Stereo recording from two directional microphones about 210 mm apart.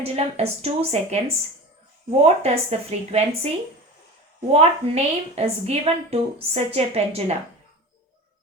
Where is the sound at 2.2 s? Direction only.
30° right (ahead or behind).